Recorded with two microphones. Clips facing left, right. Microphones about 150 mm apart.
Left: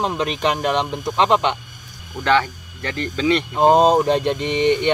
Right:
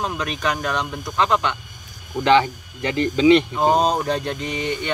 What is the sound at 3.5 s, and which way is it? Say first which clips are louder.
Speech: left 5 dB; 25° left (ahead or behind).